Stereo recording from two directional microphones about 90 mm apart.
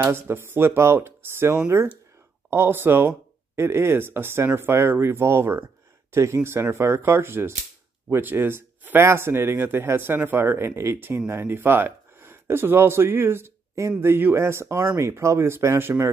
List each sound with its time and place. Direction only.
0.0 s speech: 25° right (ahead or behind)